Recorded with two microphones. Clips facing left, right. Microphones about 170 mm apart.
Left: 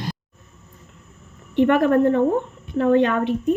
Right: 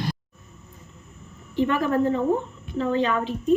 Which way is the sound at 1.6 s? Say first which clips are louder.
Left 6 dB; 60° left (ahead or behind).